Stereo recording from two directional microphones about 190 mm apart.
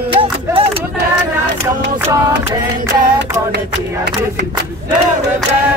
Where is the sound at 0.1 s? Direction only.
30° right (ahead or behind).